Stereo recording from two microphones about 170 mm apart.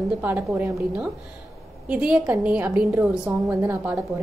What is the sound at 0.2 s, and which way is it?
A woman's voice, 10° right (ahead or behind).